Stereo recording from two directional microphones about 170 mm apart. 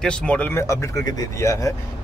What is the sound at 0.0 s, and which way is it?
Speech, 5° left (ahead or behind).